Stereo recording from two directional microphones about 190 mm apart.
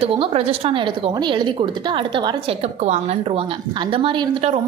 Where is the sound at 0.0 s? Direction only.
30° right (ahead or behind).